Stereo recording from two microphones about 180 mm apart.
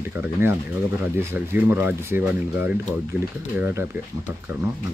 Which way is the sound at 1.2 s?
15° right (ahead or behind).